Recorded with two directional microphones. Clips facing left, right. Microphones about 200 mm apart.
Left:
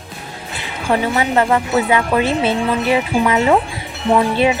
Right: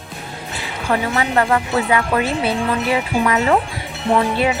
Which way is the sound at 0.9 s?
20° left (ahead or behind).